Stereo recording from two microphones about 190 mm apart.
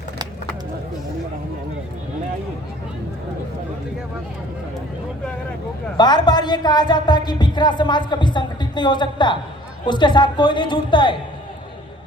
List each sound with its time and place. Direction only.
6.0 s speech: 20° left (ahead or behind)